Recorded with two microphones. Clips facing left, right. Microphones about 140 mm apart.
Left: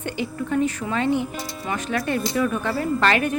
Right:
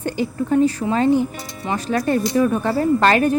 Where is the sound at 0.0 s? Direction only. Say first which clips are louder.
Right 5 dB; 35° right (ahead or behind).